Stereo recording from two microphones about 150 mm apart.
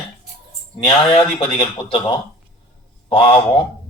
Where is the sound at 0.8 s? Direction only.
30° left (ahead or behind).